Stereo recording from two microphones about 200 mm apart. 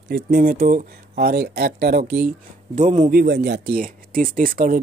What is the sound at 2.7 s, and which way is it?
Speech, 40° right (ahead or behind).